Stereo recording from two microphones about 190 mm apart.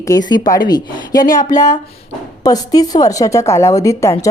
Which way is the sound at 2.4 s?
20° left (ahead or behind).